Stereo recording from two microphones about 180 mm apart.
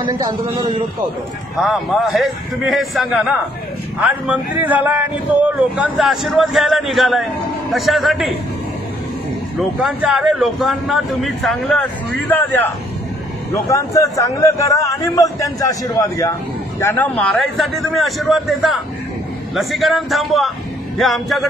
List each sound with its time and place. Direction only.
0.0 s a man's voice: 20° right (ahead or behind)
1.6 s a man's voice: centre (ahead or behind)
9.6 s a man's voice: 5° right (ahead or behind); by 12.6 s 10° left (ahead or behind)
13.7 s a man's voice: 15° left (ahead or behind); by 21.5 s centre (ahead or behind)